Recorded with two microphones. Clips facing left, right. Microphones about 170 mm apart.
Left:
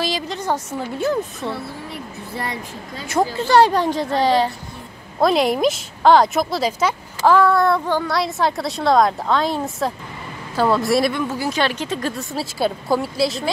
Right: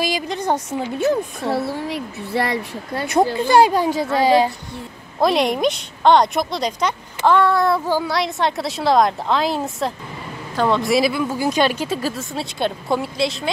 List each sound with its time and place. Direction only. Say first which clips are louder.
0.0 s a woman's voice: right 2 dB; 15° right (ahead or behind)
1.7 s speech: right 7 dB; 80° right
3.3 s a woman's voice: left 1 dB; 10° right (ahead or behind)
5.2 s a woman's voice: left 1 dB; centre (ahead or behind)